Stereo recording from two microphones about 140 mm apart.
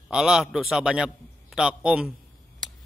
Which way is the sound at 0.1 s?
5° right (ahead or behind).